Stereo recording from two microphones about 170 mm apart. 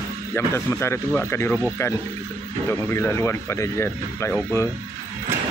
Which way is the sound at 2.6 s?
15° left (ahead or behind).